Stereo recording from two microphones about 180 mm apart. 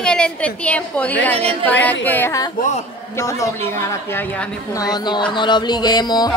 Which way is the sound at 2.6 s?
40° left (ahead or behind).